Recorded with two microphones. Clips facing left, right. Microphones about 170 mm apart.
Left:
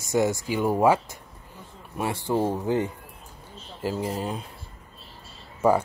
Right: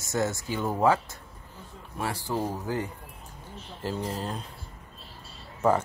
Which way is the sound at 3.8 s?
10° left (ahead or behind).